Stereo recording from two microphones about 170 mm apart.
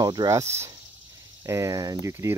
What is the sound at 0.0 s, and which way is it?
Speech, 25° right (ahead or behind).